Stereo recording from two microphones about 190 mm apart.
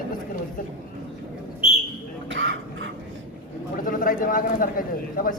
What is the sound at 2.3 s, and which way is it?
Throat clearing, 75° right (ahead or behind).